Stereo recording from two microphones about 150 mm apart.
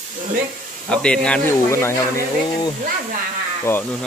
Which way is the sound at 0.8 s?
5° left (ahead or behind).